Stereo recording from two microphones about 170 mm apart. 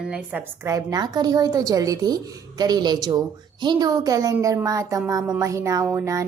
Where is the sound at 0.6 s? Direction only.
20° right (ahead or behind).